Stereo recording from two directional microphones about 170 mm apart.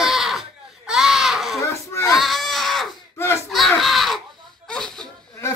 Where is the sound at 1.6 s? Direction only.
15° left (ahead or behind).